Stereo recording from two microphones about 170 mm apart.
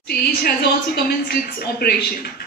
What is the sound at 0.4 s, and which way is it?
A woman's voice, 65° left (ahead or behind).